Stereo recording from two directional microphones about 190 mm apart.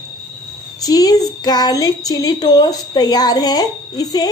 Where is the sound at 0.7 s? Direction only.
20° left (ahead or behind).